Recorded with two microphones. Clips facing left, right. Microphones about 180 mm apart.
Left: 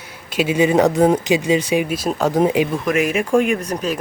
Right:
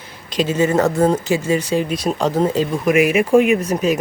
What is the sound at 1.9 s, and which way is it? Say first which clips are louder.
Speech: even; centre (ahead or behind).